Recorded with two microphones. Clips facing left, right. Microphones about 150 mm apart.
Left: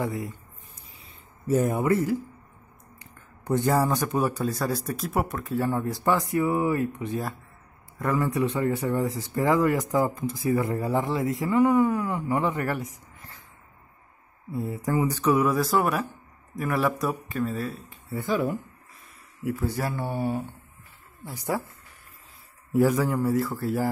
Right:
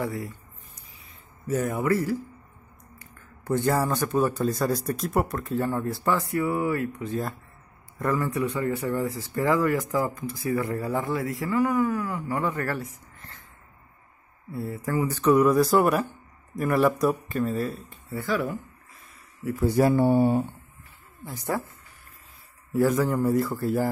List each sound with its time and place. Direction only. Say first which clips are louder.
0.0 s speech: left 1 dB; 20° left (ahead or behind)
1.5 s a man's voice: left 2 dB; 25° left (ahead or behind)
14.5 s a man's voice: left 2 dB; 15° left (ahead or behind); by 17.9 s centre (ahead or behind)
18.1 s speech: left 1 dB; 20° left (ahead or behind)
19.6 s speech: right 12 dB; 20° right (ahead or behind)
21.5 s a man's voice: even; 10° left (ahead or behind)
23.0 s speech: right 1 dB; 5° left (ahead or behind)